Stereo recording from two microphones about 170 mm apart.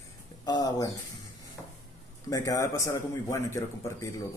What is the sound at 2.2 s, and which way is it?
A man's voice, 20° left (ahead or behind).